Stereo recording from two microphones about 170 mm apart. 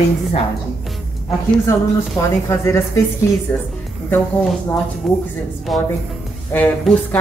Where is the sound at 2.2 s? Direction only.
15° left (ahead or behind).